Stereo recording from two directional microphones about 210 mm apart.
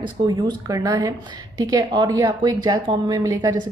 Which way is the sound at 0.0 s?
20° right (ahead or behind).